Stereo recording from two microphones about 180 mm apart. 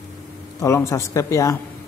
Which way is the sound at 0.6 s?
15° left (ahead or behind).